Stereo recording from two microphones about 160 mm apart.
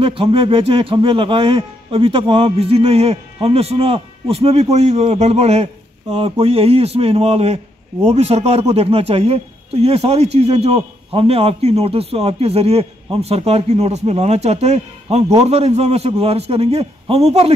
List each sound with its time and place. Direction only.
0.0 s speech: 35° right (ahead or behind)